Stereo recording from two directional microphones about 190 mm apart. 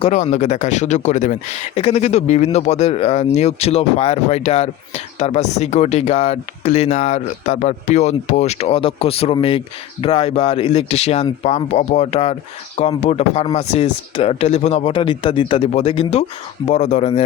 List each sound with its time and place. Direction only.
0.0 s speech: 35° left (ahead or behind)